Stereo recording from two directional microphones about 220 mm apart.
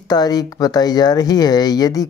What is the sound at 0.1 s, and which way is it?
Speech, 15° left (ahead or behind).